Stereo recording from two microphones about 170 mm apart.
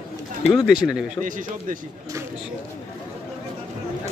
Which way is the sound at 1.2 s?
50° right (ahead or behind).